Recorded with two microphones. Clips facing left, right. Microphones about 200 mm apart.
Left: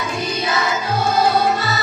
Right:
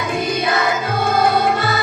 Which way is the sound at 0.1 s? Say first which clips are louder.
Right 5 dB; 55° right (ahead or behind).